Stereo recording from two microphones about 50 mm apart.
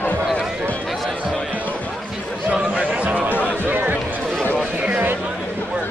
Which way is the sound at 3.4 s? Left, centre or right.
Right.